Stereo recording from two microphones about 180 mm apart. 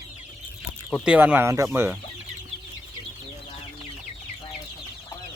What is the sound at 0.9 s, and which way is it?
Speech, 5° right (ahead or behind).